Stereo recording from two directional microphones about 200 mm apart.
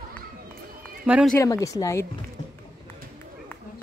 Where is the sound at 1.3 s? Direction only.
15° left (ahead or behind).